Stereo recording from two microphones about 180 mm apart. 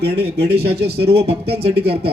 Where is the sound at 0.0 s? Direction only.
65° right (ahead or behind).